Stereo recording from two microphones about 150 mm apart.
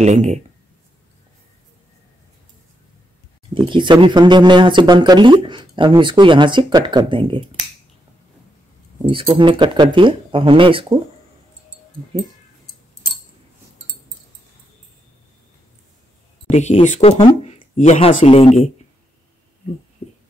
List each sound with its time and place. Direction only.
0.0 s speech: 50° right (ahead or behind)
3.5 s speech: 30° right (ahead or behind)
9.1 s speech: 35° right (ahead or behind)
16.4 s speech: 50° left (ahead or behind)